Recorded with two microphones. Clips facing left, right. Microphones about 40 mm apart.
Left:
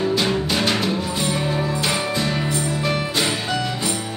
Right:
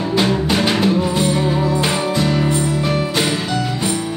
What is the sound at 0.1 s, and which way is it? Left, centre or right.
Music, centre.